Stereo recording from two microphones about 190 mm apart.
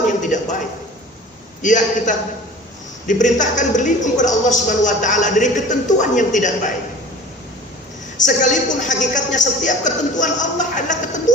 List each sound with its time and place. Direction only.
0.2 s a sound: 40° left (ahead or behind)
1.6 s a woman's voice: 40° left (ahead or behind)
8.2 s a woman's voice: 40° left (ahead or behind)